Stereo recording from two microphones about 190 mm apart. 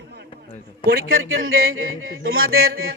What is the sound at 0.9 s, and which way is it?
Speech, 55° right (ahead or behind).